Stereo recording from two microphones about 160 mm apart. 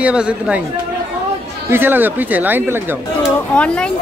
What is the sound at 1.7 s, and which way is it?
Speech, 15° right (ahead or behind).